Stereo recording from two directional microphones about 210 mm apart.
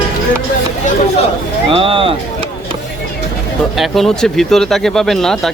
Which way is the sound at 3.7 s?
Centre (ahead or behind).